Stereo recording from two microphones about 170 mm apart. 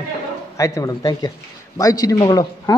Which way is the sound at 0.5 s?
20° left (ahead or behind).